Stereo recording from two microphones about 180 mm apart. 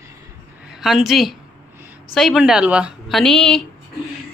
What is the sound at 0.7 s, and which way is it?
A woman's voice, centre (ahead or behind).